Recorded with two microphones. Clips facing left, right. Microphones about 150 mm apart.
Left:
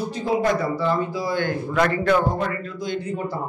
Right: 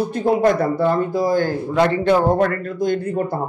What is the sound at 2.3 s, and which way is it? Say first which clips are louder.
Speech: right 8 dB; 55° right (ahead or behind).